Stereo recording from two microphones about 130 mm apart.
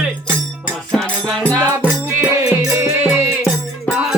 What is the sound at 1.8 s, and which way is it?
Music, 20° right (ahead or behind).